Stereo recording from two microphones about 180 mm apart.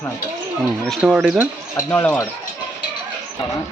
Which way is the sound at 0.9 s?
5° right (ahead or behind).